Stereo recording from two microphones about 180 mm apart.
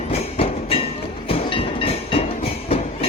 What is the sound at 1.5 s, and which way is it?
Train, 30° left (ahead or behind).